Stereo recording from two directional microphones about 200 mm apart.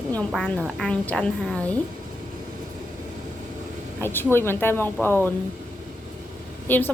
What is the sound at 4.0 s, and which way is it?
A woman's voice, 10° left (ahead or behind).